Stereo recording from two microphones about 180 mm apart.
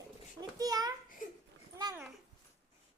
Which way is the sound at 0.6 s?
20° right (ahead or behind).